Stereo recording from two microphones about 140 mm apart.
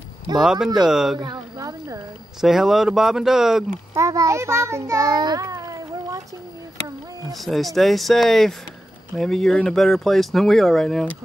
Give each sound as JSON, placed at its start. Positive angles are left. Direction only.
{"t": 0.4, "sound": "speech", "side_deg": -5}
{"t": 1.2, "sound": "speech", "side_deg": -30}
{"t": 2.4, "sound": "speech", "side_deg": 0}
{"t": 3.9, "sound": "a child's voice", "side_deg": -25}
{"t": 7.3, "sound": "speech", "side_deg": 0}